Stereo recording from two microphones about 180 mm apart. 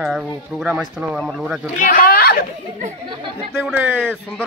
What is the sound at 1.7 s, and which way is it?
Speech, 45° left (ahead or behind).